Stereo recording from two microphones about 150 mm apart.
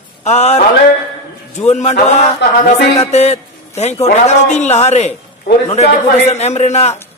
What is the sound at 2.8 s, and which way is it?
Music, 45° left (ahead or behind).